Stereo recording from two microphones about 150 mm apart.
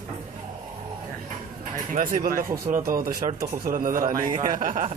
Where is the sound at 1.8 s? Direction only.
60° right (ahead or behind).